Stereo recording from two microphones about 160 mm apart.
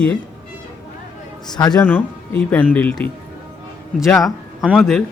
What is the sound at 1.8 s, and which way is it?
Speech, 10° left (ahead or behind).